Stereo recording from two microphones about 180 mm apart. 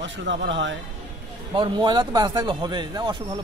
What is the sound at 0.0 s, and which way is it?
Speech, 90° right.